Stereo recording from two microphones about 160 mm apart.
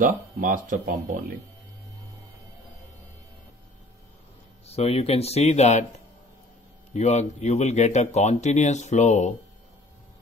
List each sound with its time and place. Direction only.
0.0 s speech: 55° right (ahead or behind)
4.6 s speech: 40° left (ahead or behind)
6.9 s speech: 45° left (ahead or behind)